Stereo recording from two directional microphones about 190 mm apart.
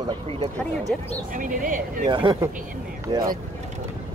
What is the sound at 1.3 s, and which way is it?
Speech, 45° right (ahead or behind).